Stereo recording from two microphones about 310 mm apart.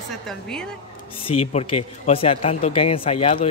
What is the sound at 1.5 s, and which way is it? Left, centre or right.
A man's voice, centre.